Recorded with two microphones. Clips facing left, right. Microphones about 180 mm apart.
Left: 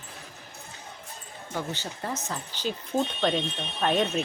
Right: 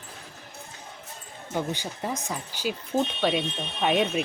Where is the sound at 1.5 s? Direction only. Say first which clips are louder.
Right 4 dB; 15° right (ahead or behind).